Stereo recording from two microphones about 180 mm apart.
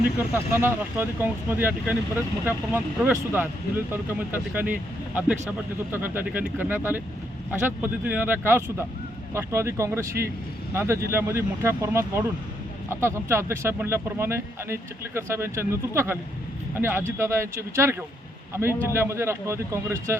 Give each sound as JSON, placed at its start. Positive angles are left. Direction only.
{"t": 0.5, "sound": "speech", "side_deg": -10}